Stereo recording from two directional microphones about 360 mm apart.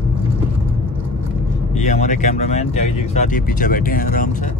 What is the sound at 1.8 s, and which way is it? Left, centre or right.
Speech, centre.